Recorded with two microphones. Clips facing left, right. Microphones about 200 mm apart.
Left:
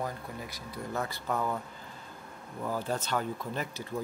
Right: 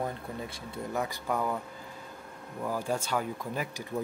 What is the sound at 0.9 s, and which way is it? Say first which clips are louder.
Speech: right 1 dB; 15° right (ahead or behind).